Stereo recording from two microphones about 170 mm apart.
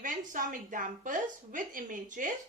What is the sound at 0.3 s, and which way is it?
A woman's voice, 50° right (ahead or behind).